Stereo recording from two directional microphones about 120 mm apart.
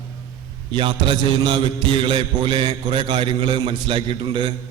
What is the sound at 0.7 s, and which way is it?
Mantra, 45° right (ahead or behind).